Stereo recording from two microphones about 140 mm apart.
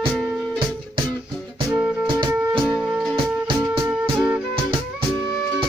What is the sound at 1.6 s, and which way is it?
Music, 5° right (ahead or behind).